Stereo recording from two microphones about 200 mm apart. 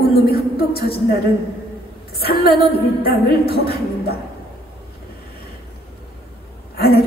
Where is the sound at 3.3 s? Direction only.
50° left (ahead or behind).